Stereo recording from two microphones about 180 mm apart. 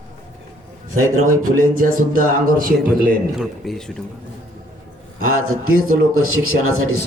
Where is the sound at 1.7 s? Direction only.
50° right (ahead or behind).